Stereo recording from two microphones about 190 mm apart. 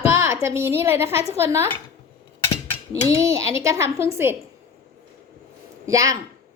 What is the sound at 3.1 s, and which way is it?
A woman's voice, 15° right (ahead or behind).